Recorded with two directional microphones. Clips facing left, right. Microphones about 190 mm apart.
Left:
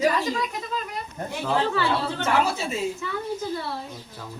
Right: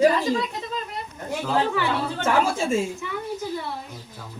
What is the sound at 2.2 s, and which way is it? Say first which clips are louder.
Speech: right 3 dB; 50° right (ahead or behind).